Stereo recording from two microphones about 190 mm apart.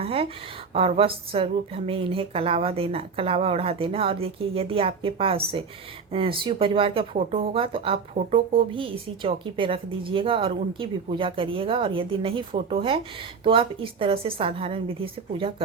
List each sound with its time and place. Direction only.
0.0 s a woman's voice: 30° right (ahead or behind)